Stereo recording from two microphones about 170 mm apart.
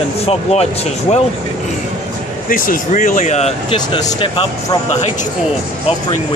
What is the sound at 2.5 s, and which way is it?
Speech, 55° left (ahead or behind).